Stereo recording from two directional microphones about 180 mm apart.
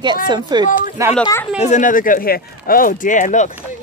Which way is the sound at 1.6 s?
40° left (ahead or behind).